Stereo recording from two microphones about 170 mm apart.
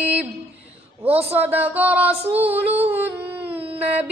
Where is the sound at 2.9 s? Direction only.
10° right (ahead or behind).